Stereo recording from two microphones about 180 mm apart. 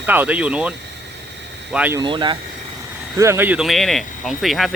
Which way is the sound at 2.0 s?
25° right (ahead or behind).